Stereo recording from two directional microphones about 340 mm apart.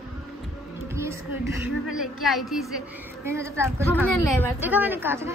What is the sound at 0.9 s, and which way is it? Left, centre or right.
A woman's voice, centre.